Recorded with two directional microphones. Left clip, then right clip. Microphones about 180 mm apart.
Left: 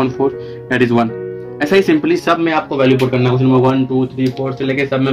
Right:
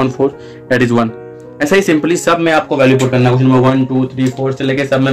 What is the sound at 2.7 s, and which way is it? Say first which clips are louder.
Speech: right 3 dB; 35° right (ahead or behind).